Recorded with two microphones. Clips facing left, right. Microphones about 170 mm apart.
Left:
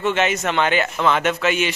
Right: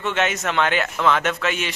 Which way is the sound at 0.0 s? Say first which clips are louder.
Left 3 dB; centre (ahead or behind).